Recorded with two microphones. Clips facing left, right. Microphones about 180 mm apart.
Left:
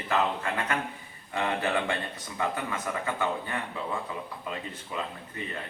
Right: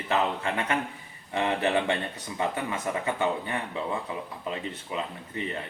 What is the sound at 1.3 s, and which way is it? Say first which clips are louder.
A man's voice: right 3 dB; 20° right (ahead or behind).